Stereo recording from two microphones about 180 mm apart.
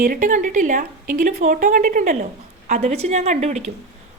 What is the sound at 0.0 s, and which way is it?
A woman's voice, 45° right (ahead or behind).